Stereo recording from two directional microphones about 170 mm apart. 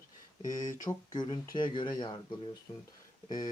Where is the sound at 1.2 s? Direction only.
25° left (ahead or behind).